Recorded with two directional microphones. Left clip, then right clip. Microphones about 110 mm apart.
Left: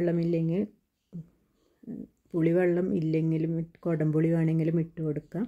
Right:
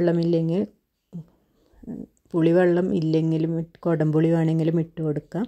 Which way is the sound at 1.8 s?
25° right (ahead or behind).